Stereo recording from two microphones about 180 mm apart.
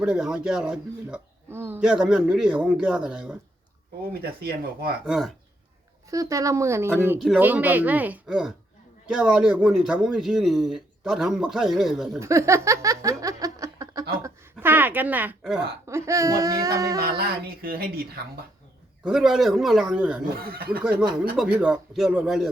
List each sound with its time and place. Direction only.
0.0 s a man's voice: 5° right (ahead or behind)
4.1 s a woman's voice: 60° right (ahead or behind)
5.0 s a man's voice: centre (ahead or behind)
6.1 s a man's voice: 20° right (ahead or behind); by 12.2 s centre (ahead or behind)
12.2 s a sound: 15° right (ahead or behind)
15.9 s speech: 15° right (ahead or behind)
17.0 s a woman's voice: 55° right (ahead or behind)
19.0 s a man's voice: centre (ahead or behind)
20.3 s a woman's voice: 55° right (ahead or behind)
21.3 s a man's voice: 5° right (ahead or behind)